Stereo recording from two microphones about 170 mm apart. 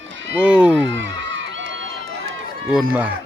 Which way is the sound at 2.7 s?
5° right (ahead or behind).